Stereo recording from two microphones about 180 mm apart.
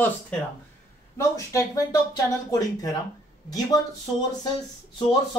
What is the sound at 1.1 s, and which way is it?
Speech, 15° left (ahead or behind).